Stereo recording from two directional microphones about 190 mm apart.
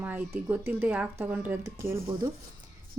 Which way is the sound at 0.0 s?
10° right (ahead or behind).